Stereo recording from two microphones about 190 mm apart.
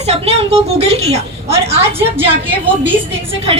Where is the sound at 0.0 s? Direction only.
35° right (ahead or behind).